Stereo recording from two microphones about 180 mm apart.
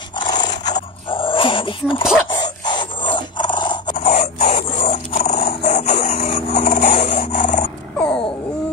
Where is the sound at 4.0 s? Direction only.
40° left (ahead or behind).